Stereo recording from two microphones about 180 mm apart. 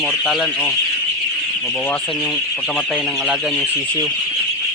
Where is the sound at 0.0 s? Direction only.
5° right (ahead or behind).